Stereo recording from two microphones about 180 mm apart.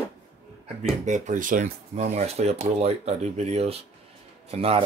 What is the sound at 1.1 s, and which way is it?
Speech, 45° right (ahead or behind).